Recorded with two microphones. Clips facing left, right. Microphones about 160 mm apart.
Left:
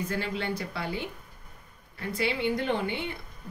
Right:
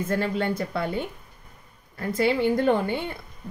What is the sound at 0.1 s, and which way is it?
A woman's voice, 45° right (ahead or behind).